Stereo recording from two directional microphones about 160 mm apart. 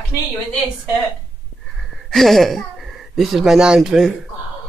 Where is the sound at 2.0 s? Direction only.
Centre (ahead or behind).